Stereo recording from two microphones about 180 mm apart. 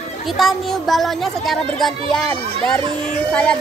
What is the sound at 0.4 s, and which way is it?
Speech, centre (ahead or behind).